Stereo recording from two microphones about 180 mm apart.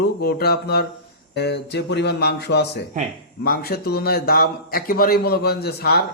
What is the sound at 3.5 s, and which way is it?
A man's voice, 60° left (ahead or behind).